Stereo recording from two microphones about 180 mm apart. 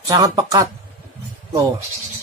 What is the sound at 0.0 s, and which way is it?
Speech, 20° right (ahead or behind).